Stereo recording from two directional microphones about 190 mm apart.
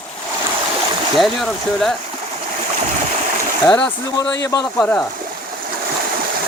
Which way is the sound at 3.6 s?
10° left (ahead or behind).